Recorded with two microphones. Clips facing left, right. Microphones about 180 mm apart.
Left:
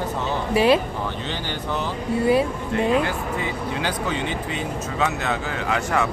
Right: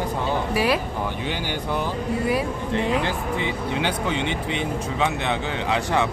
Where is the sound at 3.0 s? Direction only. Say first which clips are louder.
Even; 25° right (ahead or behind).